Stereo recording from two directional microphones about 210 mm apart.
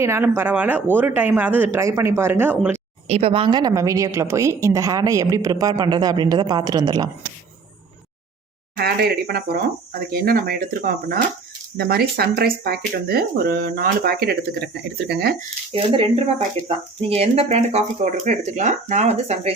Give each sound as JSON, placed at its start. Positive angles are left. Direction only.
{"t": 0.0, "sound": "a woman's voice", "side_deg": -10}
{"t": 3.1, "sound": "a woman's voice", "side_deg": -25}
{"t": 8.7, "sound": "speech", "side_deg": -50}
{"t": 15.7, "sound": "speech", "side_deg": -25}